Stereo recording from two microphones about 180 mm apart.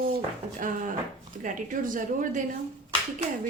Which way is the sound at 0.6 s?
45° right (ahead or behind).